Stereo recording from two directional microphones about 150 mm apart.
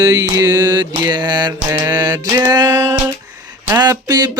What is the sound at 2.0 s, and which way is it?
Music, 25° right (ahead or behind).